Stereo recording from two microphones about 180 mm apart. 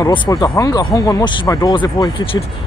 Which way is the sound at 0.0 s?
25° left (ahead or behind).